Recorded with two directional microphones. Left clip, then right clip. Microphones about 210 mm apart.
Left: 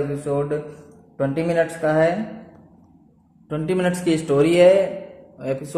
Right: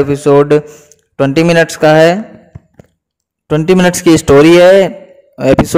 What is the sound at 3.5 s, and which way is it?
A man's voice, 50° right (ahead or behind).